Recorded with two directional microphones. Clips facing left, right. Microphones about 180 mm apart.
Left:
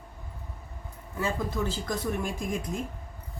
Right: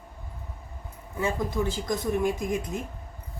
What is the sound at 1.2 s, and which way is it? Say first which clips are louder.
Speech: right 2 dB; 20° right (ahead or behind).